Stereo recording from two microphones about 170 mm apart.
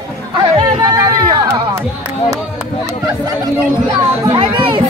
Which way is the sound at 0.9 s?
20° right (ahead or behind).